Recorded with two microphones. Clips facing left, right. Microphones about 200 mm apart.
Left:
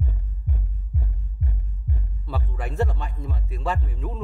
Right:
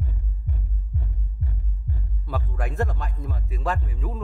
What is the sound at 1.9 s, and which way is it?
Music, centre (ahead or behind).